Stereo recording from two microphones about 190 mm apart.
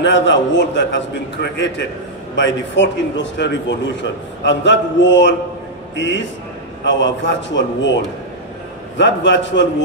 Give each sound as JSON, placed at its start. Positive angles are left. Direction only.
{"t": 0.0, "sound": "a man's voice", "side_deg": 70}